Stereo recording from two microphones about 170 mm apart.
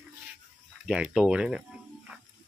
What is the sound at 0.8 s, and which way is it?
Speech, 5° right (ahead or behind).